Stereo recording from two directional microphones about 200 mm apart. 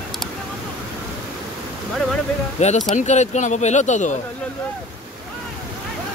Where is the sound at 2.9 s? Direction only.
35° left (ahead or behind).